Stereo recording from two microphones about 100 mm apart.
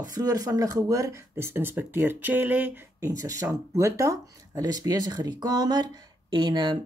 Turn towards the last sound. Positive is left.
turn(degrees=-50)  # may be behind; listen again after turning